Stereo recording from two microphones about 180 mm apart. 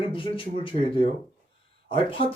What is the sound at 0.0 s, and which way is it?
Speech, 30° left (ahead or behind).